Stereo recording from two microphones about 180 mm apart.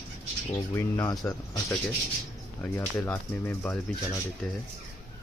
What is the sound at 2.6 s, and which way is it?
Speech, 15° left (ahead or behind).